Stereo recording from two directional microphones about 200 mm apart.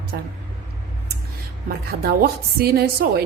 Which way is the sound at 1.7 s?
50° right (ahead or behind).